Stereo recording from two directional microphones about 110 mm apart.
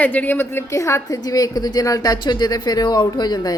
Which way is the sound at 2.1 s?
40° left (ahead or behind).